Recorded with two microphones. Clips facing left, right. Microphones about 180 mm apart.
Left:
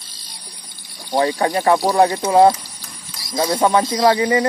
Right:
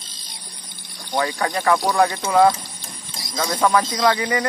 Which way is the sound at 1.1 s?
25° left (ahead or behind).